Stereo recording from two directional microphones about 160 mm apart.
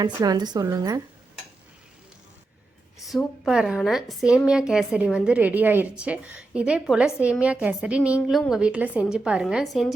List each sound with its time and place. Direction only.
0.0 s speech: 25° right (ahead or behind)
3.0 s a woman's voice: centre (ahead or behind)